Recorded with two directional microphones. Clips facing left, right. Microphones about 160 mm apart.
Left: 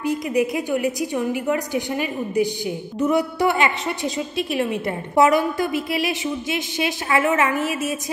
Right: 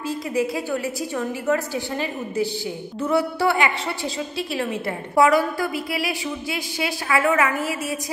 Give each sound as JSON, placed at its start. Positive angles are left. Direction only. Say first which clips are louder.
{"t": 0.0, "sound": "a woman's voice", "louder": "left 3 dB", "side_deg": 20}